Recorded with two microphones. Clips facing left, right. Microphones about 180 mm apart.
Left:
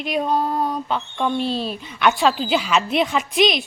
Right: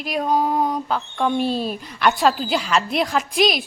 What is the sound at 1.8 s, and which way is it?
A woman's voice, centre (ahead or behind).